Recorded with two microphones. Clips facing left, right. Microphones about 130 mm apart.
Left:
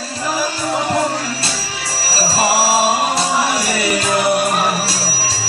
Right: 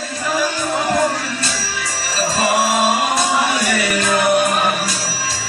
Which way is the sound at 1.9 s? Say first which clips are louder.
Left 1 dB; 30° left (ahead or behind).